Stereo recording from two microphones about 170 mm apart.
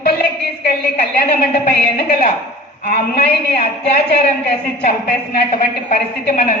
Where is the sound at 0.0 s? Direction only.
65° left (ahead or behind).